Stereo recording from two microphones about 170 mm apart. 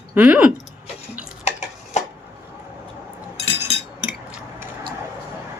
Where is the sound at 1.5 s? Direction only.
40° left (ahead or behind).